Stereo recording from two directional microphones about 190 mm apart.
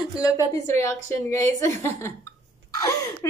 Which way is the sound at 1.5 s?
15° left (ahead or behind).